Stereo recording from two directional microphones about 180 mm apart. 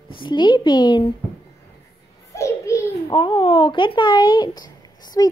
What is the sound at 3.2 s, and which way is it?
Speech, 30° left (ahead or behind).